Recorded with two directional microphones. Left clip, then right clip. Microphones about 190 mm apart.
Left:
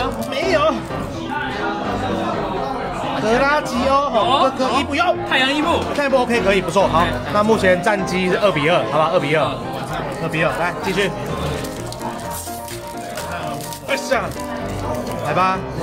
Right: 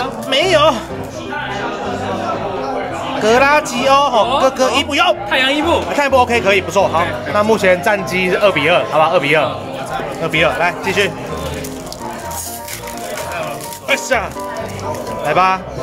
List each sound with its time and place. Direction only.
0.3 s music: 25° right (ahead or behind)
3.3 s speech: 25° right (ahead or behind)
5.3 s speech: 15° left (ahead or behind)
5.9 s speech: 25° right (ahead or behind)
6.7 s speech: 5° right (ahead or behind)
13.8 s speech: 15° right (ahead or behind)
15.3 s speech: 15° right (ahead or behind)